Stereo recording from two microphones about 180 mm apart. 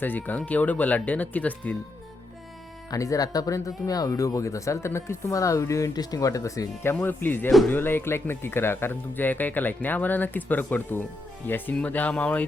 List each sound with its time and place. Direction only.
0.0 s speech: 10° left (ahead or behind)
2.9 s speech: 20° left (ahead or behind)